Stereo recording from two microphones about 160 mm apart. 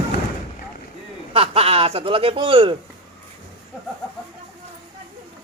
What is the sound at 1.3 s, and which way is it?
Speech, 40° right (ahead or behind).